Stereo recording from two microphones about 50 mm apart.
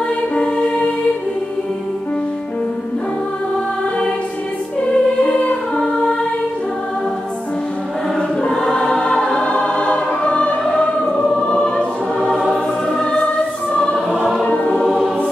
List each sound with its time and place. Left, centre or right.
0.4 s music: left
4.8 s music: left
8.5 s choir: centre
11.4 s music: centre
13.0 s choir: centre
14.4 s choir: left